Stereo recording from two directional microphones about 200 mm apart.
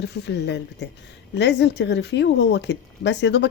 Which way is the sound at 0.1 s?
60° left (ahead or behind).